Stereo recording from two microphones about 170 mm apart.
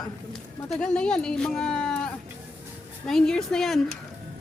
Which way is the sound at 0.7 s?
5° left (ahead or behind).